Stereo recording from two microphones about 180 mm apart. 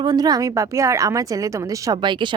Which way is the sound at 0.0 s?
20° right (ahead or behind).